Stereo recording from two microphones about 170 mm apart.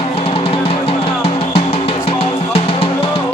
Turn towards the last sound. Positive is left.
turn(degrees=35)  # may be behind; listen again after turning